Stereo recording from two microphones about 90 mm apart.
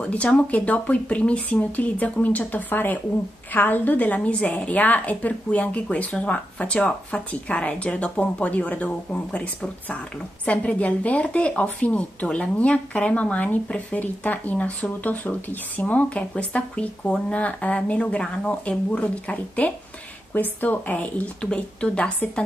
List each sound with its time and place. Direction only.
0.0 s a woman's voice: 15° left (ahead or behind)